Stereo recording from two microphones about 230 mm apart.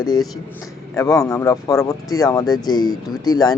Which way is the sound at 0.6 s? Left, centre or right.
Centre.